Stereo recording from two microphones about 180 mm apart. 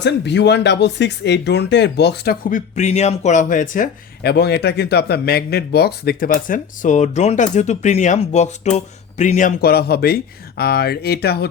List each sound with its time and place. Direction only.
0.0 s speech: 75° left (ahead or behind); by 9.6 s 40° left (ahead or behind)
9.6 s speech: 60° left (ahead or behind)